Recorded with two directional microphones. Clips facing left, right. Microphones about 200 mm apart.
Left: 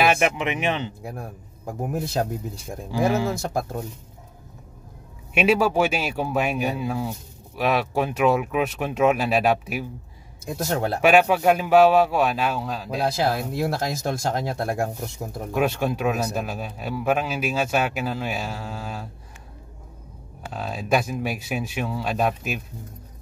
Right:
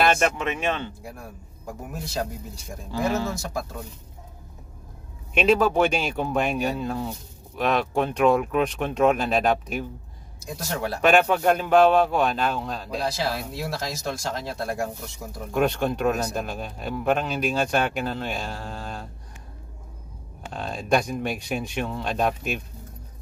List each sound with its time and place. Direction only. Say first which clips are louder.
0.0 s speech: left 1 dB; 10° left (ahead or behind)
1.9 s speech: left 5 dB; 55° left (ahead or behind)
2.9 s speech: left 3 dB; 10° left (ahead or behind)
3.3 s speech: left 4 dB; 55° left (ahead or behind)
5.3 s speech: even; 10° left (ahead or behind)
10.4 s speech: left 5 dB; 55° left (ahead or behind)
11.0 s a man's voice: left 1 dB; 5° left (ahead or behind)
13.0 s speech: left 5 dB; 55° left (ahead or behind)
15.5 s a man's voice: even; 5° left (ahead or behind)
20.4 s a man's voice: even; 5° left (ahead or behind)